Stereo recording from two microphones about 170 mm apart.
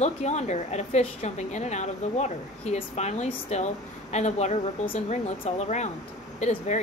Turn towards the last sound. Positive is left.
turn(degrees=40)  # may be behind; listen again after turning